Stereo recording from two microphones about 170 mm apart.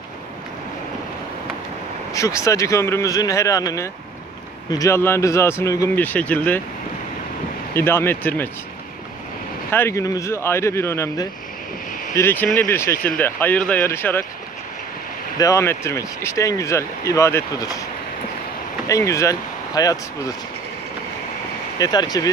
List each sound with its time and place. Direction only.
2.1 s speech: 20° left (ahead or behind)
7.7 s speech: 15° left (ahead or behind)
9.7 s speech: 15° left (ahead or behind)
15.3 s speech: 20° left (ahead or behind)
18.9 s speech: 20° left (ahead or behind)
21.7 s speech: 25° left (ahead or behind)